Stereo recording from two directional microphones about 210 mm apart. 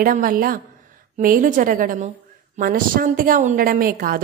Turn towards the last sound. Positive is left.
turn(degrees=-45)  # may be behind; listen again after turning